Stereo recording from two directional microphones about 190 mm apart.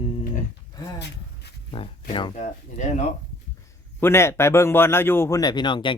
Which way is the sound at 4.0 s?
15° left (ahead or behind).